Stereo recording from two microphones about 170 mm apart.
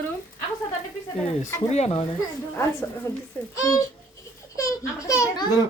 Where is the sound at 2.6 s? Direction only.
15° left (ahead or behind).